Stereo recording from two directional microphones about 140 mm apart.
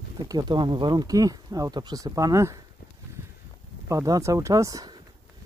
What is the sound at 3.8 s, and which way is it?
Speech, 25° right (ahead or behind).